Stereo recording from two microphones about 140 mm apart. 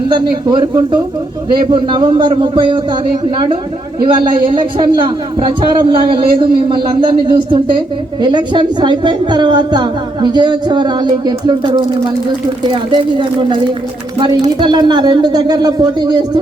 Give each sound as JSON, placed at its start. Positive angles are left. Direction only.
{"t": 0.7, "sound": "a woman's voice", "side_deg": -25}
{"t": 4.0, "sound": "a woman's voice", "side_deg": -35}
{"t": 14.6, "sound": "speech", "side_deg": -30}